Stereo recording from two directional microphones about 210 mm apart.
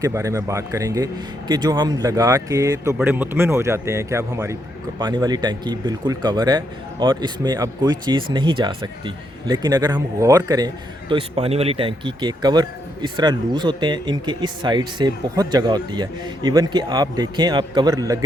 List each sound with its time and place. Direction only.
0.0 s a man's voice: 15° right (ahead or behind)